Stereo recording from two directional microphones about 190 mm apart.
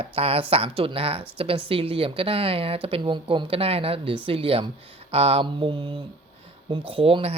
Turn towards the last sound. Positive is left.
turn(degrees=-30)  # may be behind; listen again after turning